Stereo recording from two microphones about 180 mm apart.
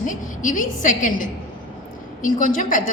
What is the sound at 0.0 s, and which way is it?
A woman's voice, 45° left (ahead or behind).